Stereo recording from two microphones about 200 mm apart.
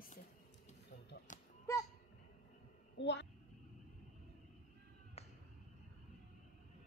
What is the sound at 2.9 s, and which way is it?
Speech, 60° left (ahead or behind).